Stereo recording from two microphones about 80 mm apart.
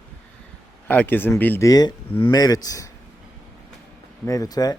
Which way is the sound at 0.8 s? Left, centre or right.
Left.